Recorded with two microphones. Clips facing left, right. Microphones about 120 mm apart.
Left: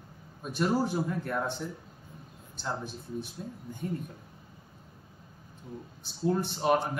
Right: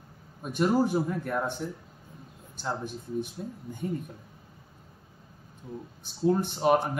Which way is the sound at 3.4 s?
20° right (ahead or behind).